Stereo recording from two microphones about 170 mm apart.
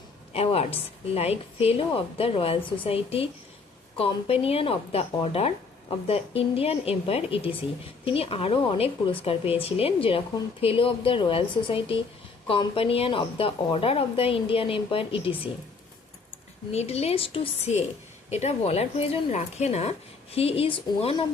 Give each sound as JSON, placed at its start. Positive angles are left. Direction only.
{"t": 0.3, "sound": "speech", "side_deg": 35}
{"t": 16.7, "sound": "speech", "side_deg": 40}